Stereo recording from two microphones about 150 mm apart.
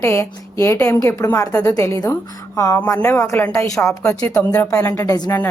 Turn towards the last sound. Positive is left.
turn(degrees=25)  # may be behind; listen again after turning